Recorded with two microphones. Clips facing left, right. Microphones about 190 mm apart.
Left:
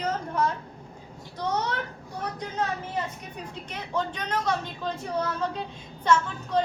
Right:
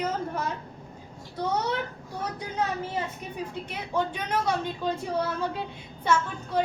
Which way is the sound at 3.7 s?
10° right (ahead or behind).